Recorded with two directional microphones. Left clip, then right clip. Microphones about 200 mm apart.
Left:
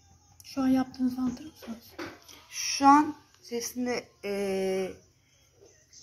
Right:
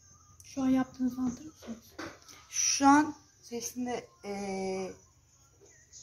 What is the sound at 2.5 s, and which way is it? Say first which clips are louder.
Speech: left 3 dB; 40° right (ahead or behind).